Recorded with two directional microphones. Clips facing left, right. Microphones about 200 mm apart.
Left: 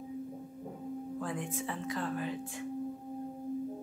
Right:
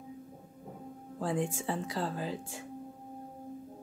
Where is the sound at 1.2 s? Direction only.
30° right (ahead or behind).